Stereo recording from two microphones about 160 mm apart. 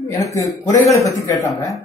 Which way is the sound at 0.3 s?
20° left (ahead or behind).